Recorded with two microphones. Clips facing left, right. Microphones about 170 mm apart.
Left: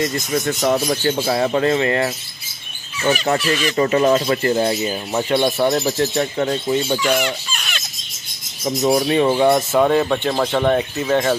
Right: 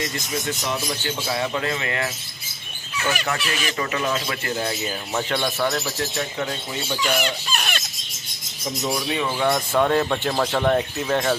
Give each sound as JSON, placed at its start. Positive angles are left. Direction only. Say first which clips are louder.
{"t": 0.6, "sound": "speech", "louder": "left 9 dB", "side_deg": 55}
{"t": 1.0, "sound": "speech", "louder": "left 8 dB", "side_deg": 40}
{"t": 3.1, "sound": "speech", "louder": "left 8 dB", "side_deg": 35}
{"t": 7.5, "sound": "a sound", "louder": "right 3 dB", "side_deg": -55}
{"t": 8.8, "sound": "speech", "louder": "left 10 dB", "side_deg": 45}
{"t": 9.5, "sound": "speech", "louder": "left 5 dB", "side_deg": 5}